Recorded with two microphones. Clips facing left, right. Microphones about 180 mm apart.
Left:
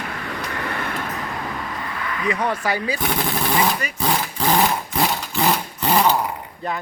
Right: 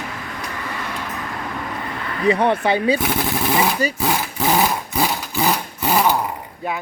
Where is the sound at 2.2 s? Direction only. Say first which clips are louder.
Right 6 dB; 30° right (ahead or behind).